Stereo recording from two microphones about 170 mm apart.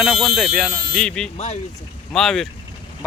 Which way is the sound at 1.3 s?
40° left (ahead or behind).